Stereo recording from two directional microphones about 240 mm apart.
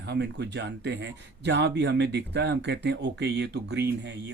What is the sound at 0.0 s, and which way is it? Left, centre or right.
Speech, right.